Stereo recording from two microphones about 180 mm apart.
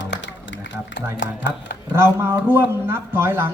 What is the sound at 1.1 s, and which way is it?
Speech, 75° left (ahead or behind).